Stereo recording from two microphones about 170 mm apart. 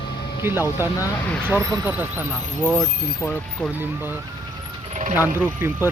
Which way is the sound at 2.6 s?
5° left (ahead or behind).